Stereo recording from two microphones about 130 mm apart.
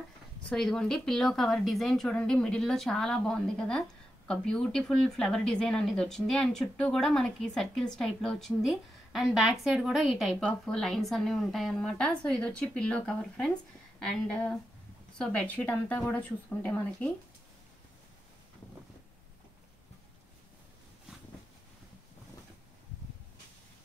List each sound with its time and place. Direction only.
0.5 s speech: 5° left (ahead or behind)